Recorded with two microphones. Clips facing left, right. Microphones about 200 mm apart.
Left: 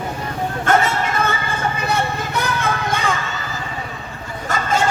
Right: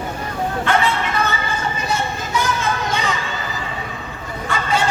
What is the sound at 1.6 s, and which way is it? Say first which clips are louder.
Music: left 2 dB; 60° left (ahead or behind).